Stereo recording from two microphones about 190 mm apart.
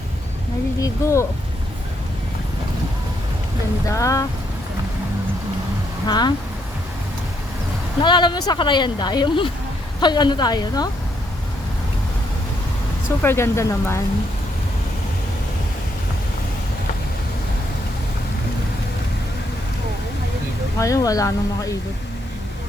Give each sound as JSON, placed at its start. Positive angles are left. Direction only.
{"t": 0.8, "sound": "speech", "side_deg": 15}
{"t": 3.8, "sound": "speech", "side_deg": 15}
{"t": 6.1, "sound": "speech", "side_deg": 20}
{"t": 8.0, "sound": "speech", "side_deg": 25}
{"t": 13.2, "sound": "speech", "side_deg": 15}
{"t": 20.7, "sound": "speech", "side_deg": 15}